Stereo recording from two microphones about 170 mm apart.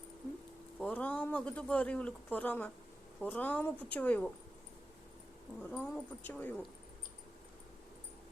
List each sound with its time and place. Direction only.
0.8 s speech: 5° left (ahead or behind)
5.6 s speech: 5° left (ahead or behind)